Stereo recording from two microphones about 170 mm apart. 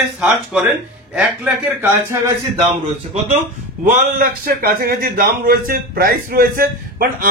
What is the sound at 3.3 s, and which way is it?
Speech, 50° right (ahead or behind).